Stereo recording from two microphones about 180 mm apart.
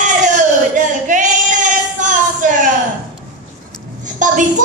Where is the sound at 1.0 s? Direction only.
45° right (ahead or behind).